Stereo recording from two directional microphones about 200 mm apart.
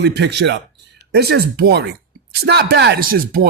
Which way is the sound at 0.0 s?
55° right (ahead or behind).